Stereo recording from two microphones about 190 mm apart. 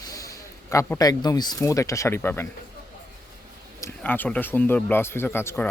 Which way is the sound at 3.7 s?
10° left (ahead or behind).